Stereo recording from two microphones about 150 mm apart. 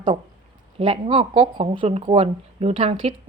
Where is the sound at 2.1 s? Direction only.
45° right (ahead or behind).